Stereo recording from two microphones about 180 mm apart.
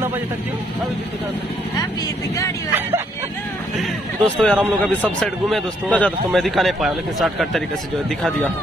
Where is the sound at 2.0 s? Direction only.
15° left (ahead or behind).